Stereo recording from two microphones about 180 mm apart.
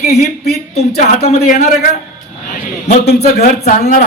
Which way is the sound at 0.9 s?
40° left (ahead or behind).